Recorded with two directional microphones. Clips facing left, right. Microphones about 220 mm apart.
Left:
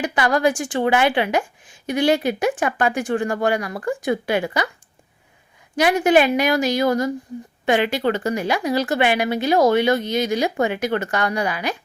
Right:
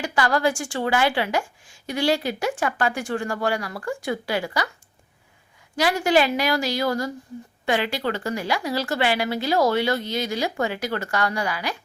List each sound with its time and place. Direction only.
0.0 s a woman's voice: 20° left (ahead or behind)
5.7 s a woman's voice: 20° left (ahead or behind)